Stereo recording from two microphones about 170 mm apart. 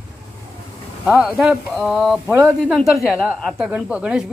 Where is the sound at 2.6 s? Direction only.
Centre (ahead or behind).